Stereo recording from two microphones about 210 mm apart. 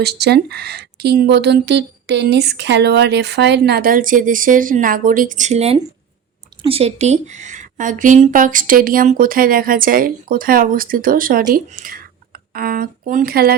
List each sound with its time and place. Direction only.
0.0 s a woman's voice: 50° right (ahead or behind)